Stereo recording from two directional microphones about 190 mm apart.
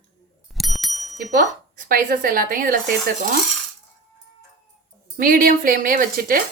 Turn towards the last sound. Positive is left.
turn(degrees=-50)  # may be behind; listen again after turning